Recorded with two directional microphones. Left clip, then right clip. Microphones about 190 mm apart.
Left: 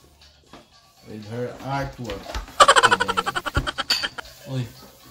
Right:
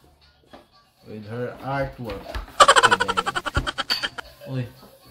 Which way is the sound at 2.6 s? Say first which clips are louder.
Even; centre (ahead or behind).